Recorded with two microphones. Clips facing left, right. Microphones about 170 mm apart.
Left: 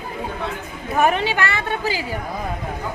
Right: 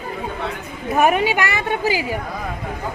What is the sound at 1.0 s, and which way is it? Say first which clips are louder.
A woman's voice: right 2 dB; 15° right (ahead or behind).